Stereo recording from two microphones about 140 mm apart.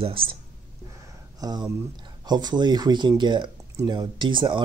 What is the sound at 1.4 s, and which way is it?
Speech, 30° right (ahead or behind).